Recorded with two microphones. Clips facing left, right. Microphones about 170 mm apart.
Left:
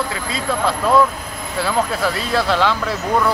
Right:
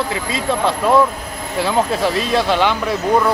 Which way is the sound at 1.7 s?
20° right (ahead or behind).